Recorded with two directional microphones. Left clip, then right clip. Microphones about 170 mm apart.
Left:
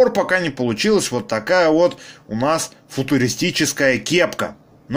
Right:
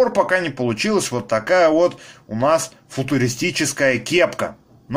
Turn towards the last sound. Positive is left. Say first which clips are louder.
# even
turn(degrees=25)  # may be behind; listen again after turning